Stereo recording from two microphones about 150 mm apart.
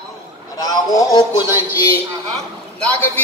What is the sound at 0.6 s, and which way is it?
Speech, 25° left (ahead or behind).